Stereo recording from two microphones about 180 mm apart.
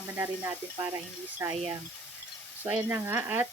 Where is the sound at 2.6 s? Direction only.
10° right (ahead or behind).